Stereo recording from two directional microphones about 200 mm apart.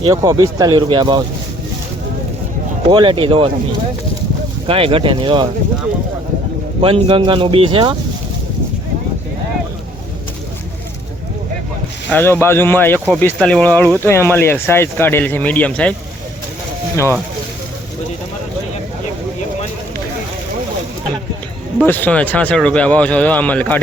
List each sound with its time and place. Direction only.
0.0 s speech: 20° right (ahead or behind)
2.9 s speech: 25° right (ahead or behind)
4.6 s speech: 25° right (ahead or behind)
6.8 s speech: 25° right (ahead or behind)
12.1 s speech: 10° left (ahead or behind)
21.8 s speech: 10° left (ahead or behind)